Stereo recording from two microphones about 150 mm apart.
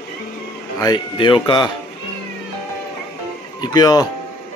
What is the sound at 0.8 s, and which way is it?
Speech, 30° left (ahead or behind).